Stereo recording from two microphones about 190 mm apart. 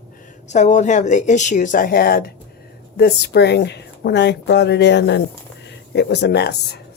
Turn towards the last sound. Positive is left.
turn(degrees=60)  # may be behind; listen again after turning